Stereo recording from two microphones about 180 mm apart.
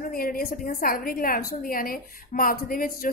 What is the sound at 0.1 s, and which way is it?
A woman's voice, 55° left (ahead or behind).